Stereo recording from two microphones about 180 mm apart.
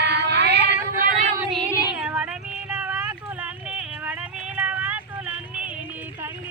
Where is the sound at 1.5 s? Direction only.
5° right (ahead or behind).